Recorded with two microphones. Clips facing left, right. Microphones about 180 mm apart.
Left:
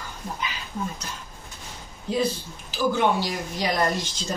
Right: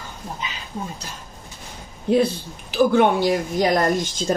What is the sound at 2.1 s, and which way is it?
A woman's voice, 60° right (ahead or behind).